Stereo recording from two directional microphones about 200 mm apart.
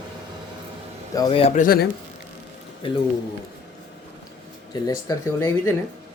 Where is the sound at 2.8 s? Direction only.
25° left (ahead or behind).